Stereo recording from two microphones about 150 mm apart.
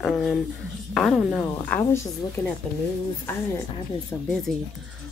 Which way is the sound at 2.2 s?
25° left (ahead or behind).